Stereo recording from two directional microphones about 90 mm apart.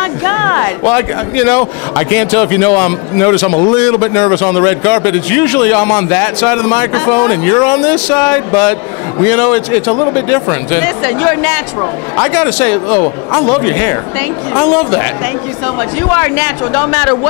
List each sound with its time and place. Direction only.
0.0 s speech: 25° left (ahead or behind)